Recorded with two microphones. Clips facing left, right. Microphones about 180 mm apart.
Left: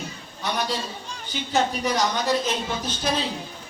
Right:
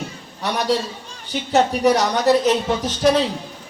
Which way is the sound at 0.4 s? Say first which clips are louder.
Right 6 dB; 75° right (ahead or behind).